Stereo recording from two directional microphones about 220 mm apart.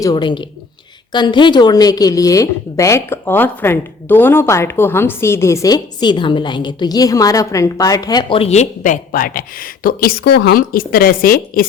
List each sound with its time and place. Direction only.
0.0 s a woman's voice: 20° left (ahead or behind); by 11.6 s 40° left (ahead or behind)